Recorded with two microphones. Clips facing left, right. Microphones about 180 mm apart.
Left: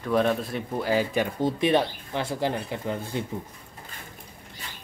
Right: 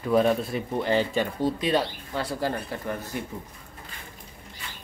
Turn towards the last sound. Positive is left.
turn(degrees=25)  # may be behind; listen again after turning